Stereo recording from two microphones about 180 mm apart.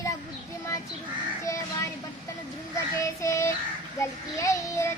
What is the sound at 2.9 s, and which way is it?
Speech, 15° left (ahead or behind).